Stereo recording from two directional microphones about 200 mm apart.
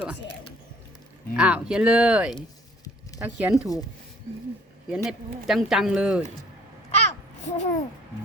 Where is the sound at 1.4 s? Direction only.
5° right (ahead or behind).